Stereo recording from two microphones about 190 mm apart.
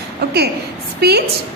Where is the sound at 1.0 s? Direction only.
55° right (ahead or behind).